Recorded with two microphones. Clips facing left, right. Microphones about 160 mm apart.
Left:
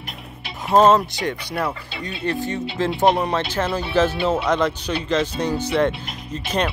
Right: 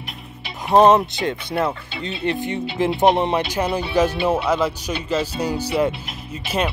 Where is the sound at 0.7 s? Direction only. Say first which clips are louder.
Right 1 dB; 20° right (ahead or behind).